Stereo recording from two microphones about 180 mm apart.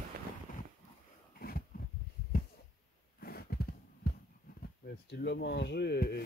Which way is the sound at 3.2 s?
60° left (ahead or behind).